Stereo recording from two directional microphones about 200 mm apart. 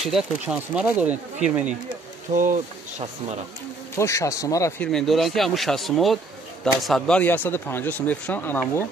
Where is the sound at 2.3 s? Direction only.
40° right (ahead or behind).